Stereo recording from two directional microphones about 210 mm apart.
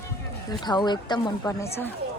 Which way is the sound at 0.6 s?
20° left (ahead or behind).